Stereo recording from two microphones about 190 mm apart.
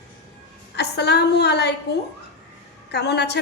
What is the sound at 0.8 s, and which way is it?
Speech, 60° left (ahead or behind).